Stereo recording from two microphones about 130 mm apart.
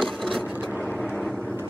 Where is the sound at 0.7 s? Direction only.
10° left (ahead or behind).